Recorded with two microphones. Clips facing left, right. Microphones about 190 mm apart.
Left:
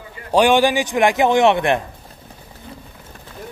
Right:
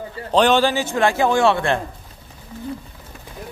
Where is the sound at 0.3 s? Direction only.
10° left (ahead or behind).